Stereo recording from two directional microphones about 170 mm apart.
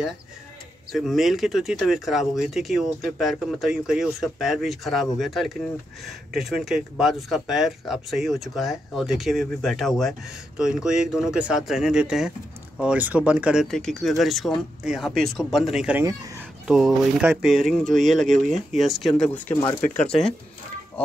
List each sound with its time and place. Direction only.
0.9 s speech: centre (ahead or behind)
19.5 s speech: 25° left (ahead or behind)
20.1 s speech: 5° left (ahead or behind)